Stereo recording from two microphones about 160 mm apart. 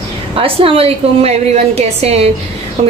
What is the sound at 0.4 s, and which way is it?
A woman's voice, 35° right (ahead or behind).